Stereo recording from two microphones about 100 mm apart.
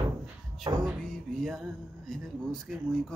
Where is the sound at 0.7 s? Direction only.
45° right (ahead or behind).